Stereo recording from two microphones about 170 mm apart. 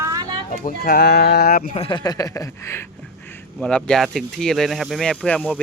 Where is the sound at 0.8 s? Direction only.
70° left (ahead or behind).